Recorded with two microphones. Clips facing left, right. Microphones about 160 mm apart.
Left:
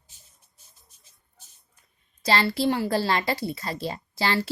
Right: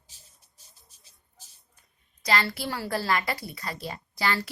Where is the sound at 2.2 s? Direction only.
30° left (ahead or behind).